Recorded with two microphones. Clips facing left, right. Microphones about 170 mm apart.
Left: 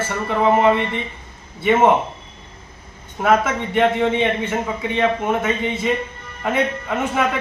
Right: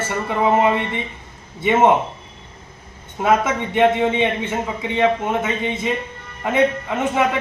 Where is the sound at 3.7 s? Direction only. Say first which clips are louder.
Right 1 dB; 15° right (ahead or behind).